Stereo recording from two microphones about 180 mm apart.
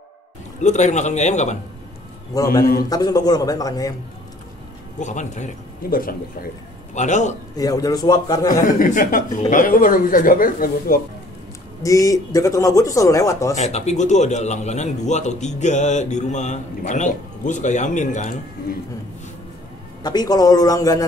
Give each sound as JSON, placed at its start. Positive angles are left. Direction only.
{"t": 0.6, "sound": "a man's voice", "side_deg": 40}
{"t": 2.3, "sound": "a man's voice", "side_deg": 20}
{"t": 2.6, "sound": "a man's voice", "side_deg": 55}
{"t": 2.9, "sound": "a man's voice", "side_deg": 20}
{"t": 4.9, "sound": "a man's voice", "side_deg": 40}
{"t": 7.5, "sound": "a man's voice", "side_deg": 20}
{"t": 8.6, "sound": "speech", "side_deg": 45}
{"t": 11.8, "sound": "speech", "side_deg": 20}
{"t": 13.6, "sound": "a man's voice", "side_deg": 40}
{"t": 20.0, "sound": "a man's voice", "side_deg": 20}